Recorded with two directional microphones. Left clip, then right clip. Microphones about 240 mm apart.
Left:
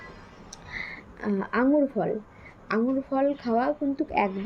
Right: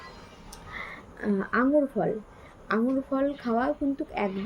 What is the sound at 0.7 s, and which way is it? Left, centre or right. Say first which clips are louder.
A woman's voice: left 3 dB; centre.